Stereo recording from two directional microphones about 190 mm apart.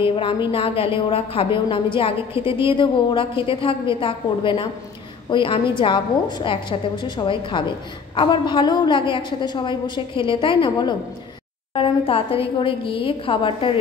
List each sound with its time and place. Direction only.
0.0 s a woman's voice: 25° left (ahead or behind)